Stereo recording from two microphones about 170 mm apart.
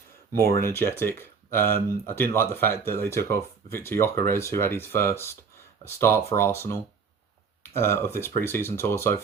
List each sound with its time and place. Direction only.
0.3 s speech: 65° right (ahead or behind)
0.6 s speech: 15° left (ahead or behind)
7.8 s speech: 15° left (ahead or behind)